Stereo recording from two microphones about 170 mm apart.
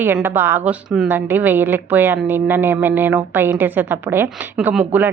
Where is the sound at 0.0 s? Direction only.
10° right (ahead or behind).